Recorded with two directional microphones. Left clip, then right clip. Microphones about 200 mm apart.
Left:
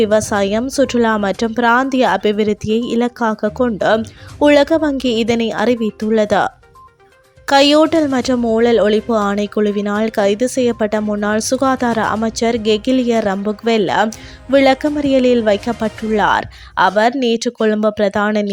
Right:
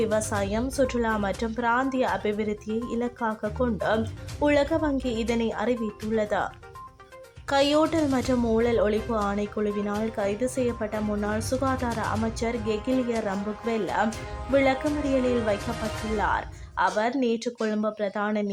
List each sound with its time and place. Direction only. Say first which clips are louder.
0.0 s speech: left 12 dB; 35° left (ahead or behind)